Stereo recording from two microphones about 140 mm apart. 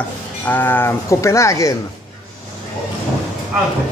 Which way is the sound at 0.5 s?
15° left (ahead or behind).